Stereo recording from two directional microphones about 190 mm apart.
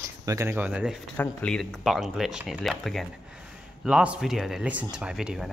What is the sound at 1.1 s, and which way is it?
Speech, 10° left (ahead or behind).